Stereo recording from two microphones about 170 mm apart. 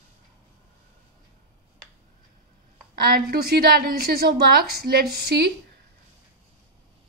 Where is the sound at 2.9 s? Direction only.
65° right (ahead or behind).